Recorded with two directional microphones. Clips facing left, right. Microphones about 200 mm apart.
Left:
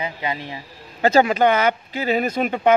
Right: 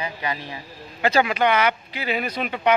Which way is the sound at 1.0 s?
45° left (ahead or behind).